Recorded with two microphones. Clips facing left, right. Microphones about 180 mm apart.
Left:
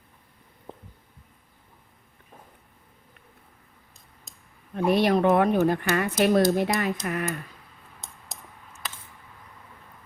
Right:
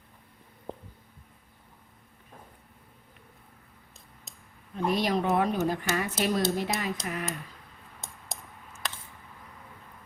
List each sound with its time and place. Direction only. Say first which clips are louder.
4.7 s speech: left 6 dB; 60° left (ahead or behind)